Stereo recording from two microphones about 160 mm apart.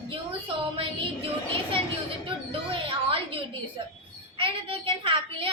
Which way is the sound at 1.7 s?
35° right (ahead or behind).